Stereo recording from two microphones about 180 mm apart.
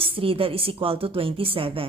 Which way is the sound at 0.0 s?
30° right (ahead or behind).